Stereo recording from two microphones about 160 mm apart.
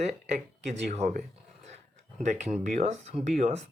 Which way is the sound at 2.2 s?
45° right (ahead or behind).